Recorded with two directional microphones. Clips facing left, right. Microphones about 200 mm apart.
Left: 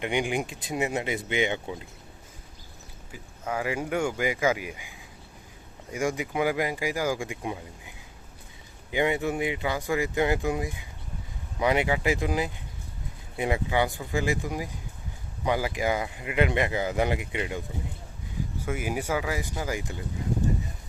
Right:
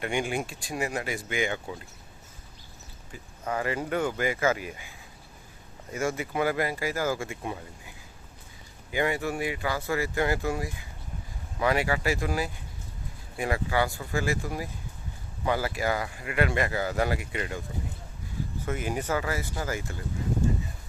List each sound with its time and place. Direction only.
0.0 s speech: 15° left (ahead or behind)
3.1 s speech: 10° left (ahead or behind)
18.6 s speech: 10° left (ahead or behind)